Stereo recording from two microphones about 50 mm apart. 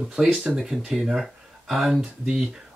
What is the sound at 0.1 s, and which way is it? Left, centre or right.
Speech, centre.